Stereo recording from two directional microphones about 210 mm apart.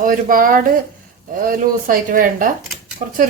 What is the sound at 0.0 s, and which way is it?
Speech, 40° right (ahead or behind).